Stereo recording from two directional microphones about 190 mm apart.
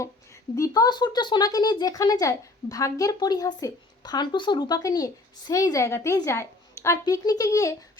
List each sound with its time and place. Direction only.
0.5 s speech: 15° left (ahead or behind)